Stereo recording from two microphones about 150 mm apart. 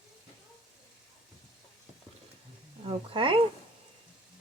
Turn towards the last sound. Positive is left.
turn(degrees=-35)  # may be behind; listen again after turning